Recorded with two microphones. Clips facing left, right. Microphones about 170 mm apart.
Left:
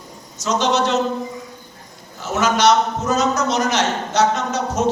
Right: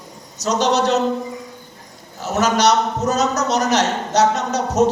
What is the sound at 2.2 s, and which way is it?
A man's voice, 40° right (ahead or behind).